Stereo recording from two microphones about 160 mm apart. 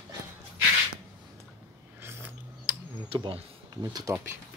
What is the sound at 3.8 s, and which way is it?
Speech, 25° right (ahead or behind).